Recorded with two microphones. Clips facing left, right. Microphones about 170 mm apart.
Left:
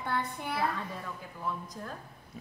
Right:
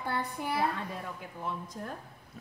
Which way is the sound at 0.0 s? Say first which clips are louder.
Even; 10° right (ahead or behind).